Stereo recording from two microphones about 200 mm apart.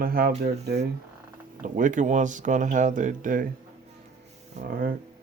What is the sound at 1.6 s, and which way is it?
Speech, 40° right (ahead or behind).